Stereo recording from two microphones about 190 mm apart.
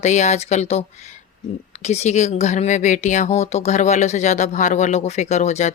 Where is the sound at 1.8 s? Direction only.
35° left (ahead or behind).